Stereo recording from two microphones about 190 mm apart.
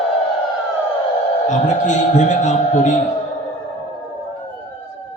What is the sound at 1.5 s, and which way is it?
A man's voice, 40° left (ahead or behind).